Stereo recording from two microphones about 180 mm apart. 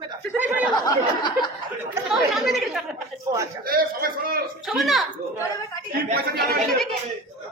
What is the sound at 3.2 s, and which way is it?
Speech, 20° right (ahead or behind).